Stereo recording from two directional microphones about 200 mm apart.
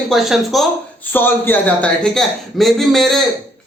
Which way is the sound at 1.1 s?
10° left (ahead or behind).